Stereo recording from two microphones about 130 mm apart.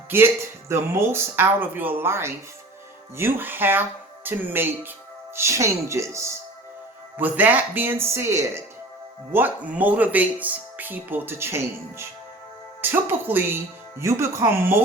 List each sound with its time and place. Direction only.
0.1 s speech: 20° right (ahead or behind)